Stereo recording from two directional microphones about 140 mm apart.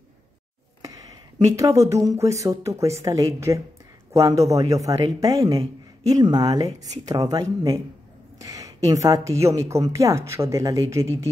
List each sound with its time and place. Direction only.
0.8 s speech: 25° right (ahead or behind)